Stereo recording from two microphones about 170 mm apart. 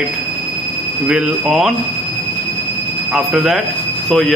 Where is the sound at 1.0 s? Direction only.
5° right (ahead or behind).